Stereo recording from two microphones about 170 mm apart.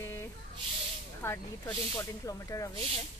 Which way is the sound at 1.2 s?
15° left (ahead or behind).